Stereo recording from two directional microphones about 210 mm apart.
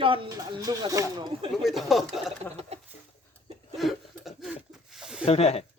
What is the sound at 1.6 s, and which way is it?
Speech, centre (ahead or behind).